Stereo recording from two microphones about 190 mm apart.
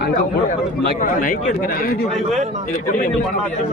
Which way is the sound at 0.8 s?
45° left (ahead or behind).